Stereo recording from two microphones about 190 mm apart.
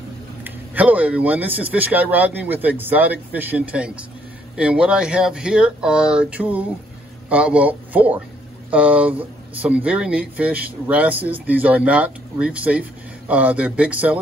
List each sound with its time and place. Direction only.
0.4 s speech: 10° right (ahead or behind)